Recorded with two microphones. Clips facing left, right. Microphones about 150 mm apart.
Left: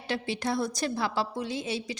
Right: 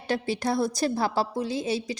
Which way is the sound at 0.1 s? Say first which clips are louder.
Right 4 dB; 40° right (ahead or behind).